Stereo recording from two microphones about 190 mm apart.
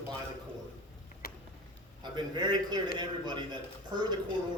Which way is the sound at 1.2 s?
55° left (ahead or behind).